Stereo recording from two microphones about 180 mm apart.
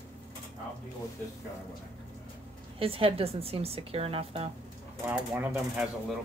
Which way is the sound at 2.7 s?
30° right (ahead or behind).